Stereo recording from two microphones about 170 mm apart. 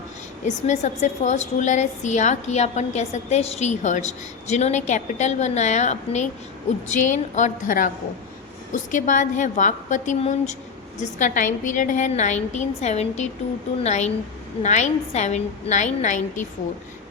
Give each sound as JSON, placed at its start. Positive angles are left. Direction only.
{"t": 0.4, "sound": "a woman's voice", "side_deg": 45}